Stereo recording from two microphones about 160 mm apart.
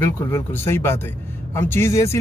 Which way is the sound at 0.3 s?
15° left (ahead or behind).